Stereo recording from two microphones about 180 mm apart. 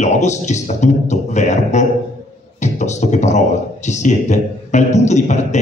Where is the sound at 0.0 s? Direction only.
40° left (ahead or behind).